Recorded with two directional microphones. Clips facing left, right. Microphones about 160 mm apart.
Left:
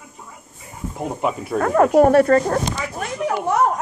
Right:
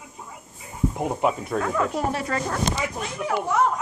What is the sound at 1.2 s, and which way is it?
Speech, centre (ahead or behind).